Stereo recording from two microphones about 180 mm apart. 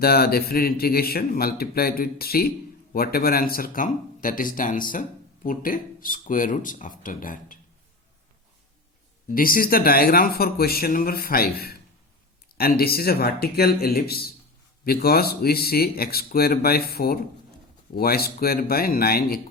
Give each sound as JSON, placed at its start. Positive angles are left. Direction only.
{"t": 0.0, "sound": "a man's voice", "side_deg": 60}
{"t": 9.3, "sound": "a man's voice", "side_deg": 50}